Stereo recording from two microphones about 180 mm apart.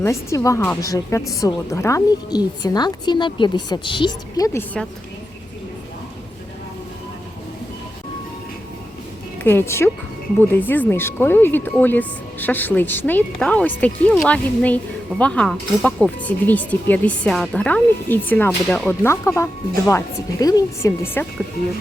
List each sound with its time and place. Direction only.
0.0 s a woman's voice: 15° left (ahead or behind)
9.4 s speech: 10° left (ahead or behind)